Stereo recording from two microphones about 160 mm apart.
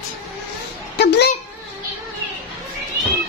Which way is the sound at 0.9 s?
90° left.